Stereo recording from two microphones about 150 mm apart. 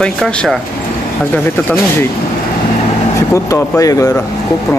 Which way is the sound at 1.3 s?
15° left (ahead or behind).